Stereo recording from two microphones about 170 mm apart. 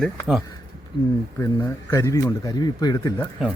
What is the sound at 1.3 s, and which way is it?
Speech, 15° left (ahead or behind).